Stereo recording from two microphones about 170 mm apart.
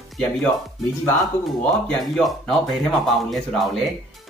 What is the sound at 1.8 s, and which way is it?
Speech, 5° left (ahead or behind).